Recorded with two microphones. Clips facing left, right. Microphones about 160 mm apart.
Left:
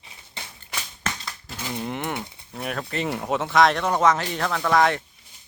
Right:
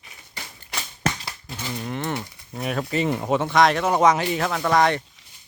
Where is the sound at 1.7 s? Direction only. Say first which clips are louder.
Right 1 dB; 20° left (ahead or behind).